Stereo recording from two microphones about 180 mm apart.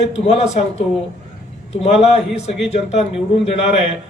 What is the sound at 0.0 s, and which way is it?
A man's voice, 40° left (ahead or behind).